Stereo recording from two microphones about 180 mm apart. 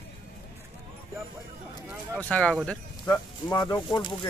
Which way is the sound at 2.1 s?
5° left (ahead or behind).